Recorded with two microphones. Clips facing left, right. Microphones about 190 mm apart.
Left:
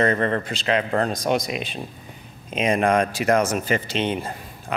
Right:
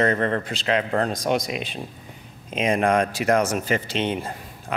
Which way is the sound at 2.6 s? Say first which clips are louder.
Left 1 dB; 15° left (ahead or behind).